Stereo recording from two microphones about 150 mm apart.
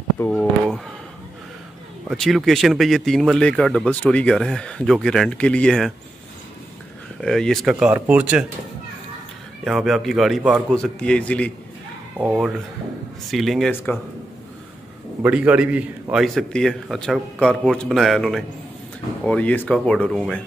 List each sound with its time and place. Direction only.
0.2 s a sound: 15° left (ahead or behind)
2.0 s speech: centre (ahead or behind)
7.2 s speech: 5° left (ahead or behind)
9.7 s speech: centre (ahead or behind)
12.2 s speech: 5° right (ahead or behind)
13.9 s speech: 10° left (ahead or behind)
15.2 s speech: 10° right (ahead or behind)